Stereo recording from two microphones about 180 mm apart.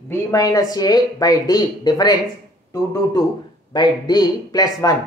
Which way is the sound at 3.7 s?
25° left (ahead or behind).